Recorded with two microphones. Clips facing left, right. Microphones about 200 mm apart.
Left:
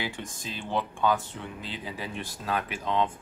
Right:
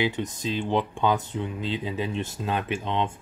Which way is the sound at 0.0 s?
20° right (ahead or behind).